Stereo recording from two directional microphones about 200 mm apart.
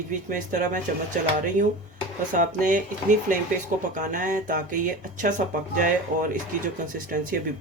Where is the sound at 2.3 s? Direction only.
40° right (ahead or behind).